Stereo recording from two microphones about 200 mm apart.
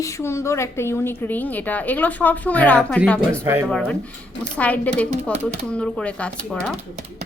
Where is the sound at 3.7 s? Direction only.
5° left (ahead or behind).